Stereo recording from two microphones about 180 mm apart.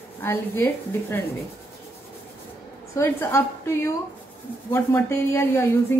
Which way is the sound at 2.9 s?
15° left (ahead or behind).